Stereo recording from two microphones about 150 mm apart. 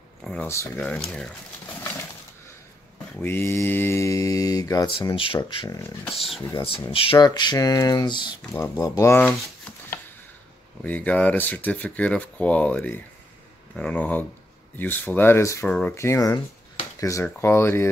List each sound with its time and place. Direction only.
0.2 s speech: 5° left (ahead or behind)
1.8 s a sound: 15° left (ahead or behind)
3.2 s mantra: 15° left (ahead or behind); by 5.7 s 35° left (ahead or behind)
5.7 s mantra: 20° left (ahead or behind)
6.6 s speech: 40° left (ahead or behind)
7.2 s mantra: 30° left (ahead or behind)
8.5 s speech: 20° left (ahead or behind)
9.2 s a sound: 5° left (ahead or behind)
10.8 s speech: 10° left (ahead or behind)